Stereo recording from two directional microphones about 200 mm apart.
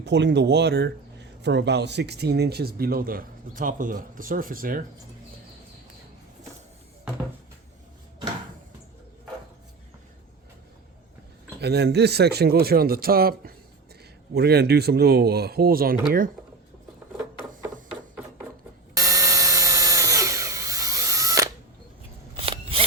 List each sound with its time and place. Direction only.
0.0 s speech: 60° right (ahead or behind); by 4.9 s 45° right (ahead or behind)
11.6 s speech: 55° right (ahead or behind)
18.9 s tools: 15° right (ahead or behind)
22.4 s a sound: 30° right (ahead or behind)